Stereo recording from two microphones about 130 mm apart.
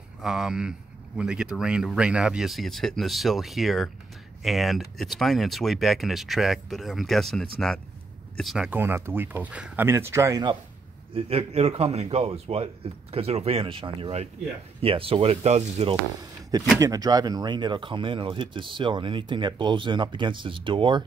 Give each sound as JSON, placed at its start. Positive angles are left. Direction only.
{"t": 0.2, "sound": "speech", "side_deg": -5}
{"t": 8.6, "sound": "speech", "side_deg": -15}
{"t": 11.1, "sound": "a man's voice", "side_deg": -50}
{"t": 16.2, "sound": "a sound", "side_deg": -30}
{"t": 16.8, "sound": "speech", "side_deg": -30}